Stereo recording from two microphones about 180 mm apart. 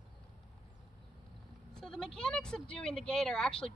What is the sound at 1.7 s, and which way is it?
Speech, 5° left (ahead or behind).